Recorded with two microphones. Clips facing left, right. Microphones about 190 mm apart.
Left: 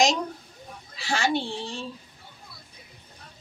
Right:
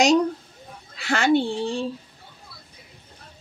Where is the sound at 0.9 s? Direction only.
60° right (ahead or behind).